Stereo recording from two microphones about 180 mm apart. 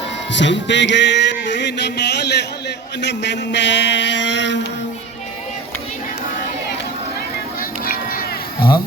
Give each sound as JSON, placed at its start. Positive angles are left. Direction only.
{"t": 0.3, "sound": "speech", "side_deg": 85}
{"t": 7.6, "sound": "run", "side_deg": 55}